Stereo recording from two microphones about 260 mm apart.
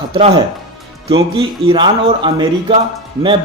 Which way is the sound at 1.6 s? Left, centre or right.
Centre.